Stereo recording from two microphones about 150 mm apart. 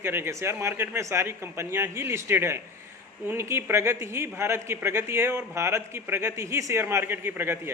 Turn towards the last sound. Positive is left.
turn(degrees=-15)  # may be behind; listen again after turning